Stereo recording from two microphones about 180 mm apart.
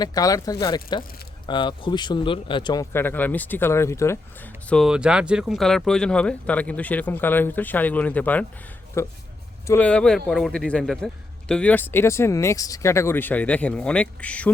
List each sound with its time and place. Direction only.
0.0 s speech: 20° left (ahead or behind)
2.9 s speech: 10° left (ahead or behind)